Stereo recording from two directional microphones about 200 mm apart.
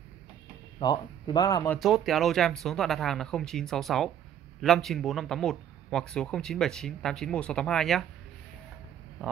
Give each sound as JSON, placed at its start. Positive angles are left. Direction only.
{"t": 0.7, "sound": "speech", "side_deg": 20}
{"t": 1.7, "sound": "speech", "side_deg": 0}